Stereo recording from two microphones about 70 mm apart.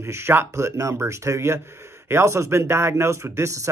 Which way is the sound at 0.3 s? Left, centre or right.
Right.